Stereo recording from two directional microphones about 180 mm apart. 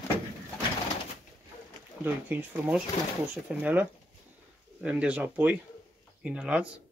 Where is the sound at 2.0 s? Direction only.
10° right (ahead or behind).